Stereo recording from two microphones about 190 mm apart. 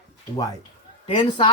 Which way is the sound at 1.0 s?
25° left (ahead or behind).